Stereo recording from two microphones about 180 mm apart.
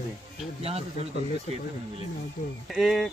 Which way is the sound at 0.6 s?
35° right (ahead or behind).